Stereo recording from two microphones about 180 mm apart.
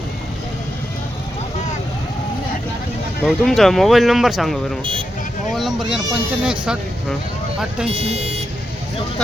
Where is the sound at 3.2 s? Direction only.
Centre (ahead or behind).